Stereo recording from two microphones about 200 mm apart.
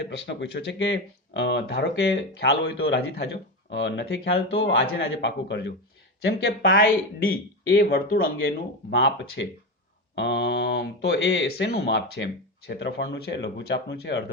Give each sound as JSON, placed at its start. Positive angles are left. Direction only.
{"t": 0.0, "sound": "speech", "side_deg": 60}
{"t": 8.9, "sound": "speech", "side_deg": 60}